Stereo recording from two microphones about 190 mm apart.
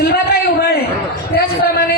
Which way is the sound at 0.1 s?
55° left (ahead or behind).